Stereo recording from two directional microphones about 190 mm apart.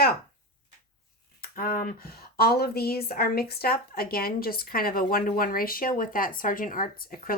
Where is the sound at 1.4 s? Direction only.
50° left (ahead or behind).